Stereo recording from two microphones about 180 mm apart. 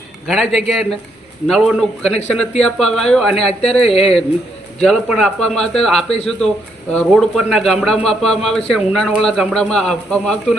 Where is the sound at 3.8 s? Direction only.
35° left (ahead or behind).